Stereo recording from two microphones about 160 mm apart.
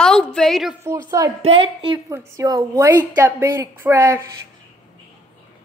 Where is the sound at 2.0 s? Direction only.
20° right (ahead or behind).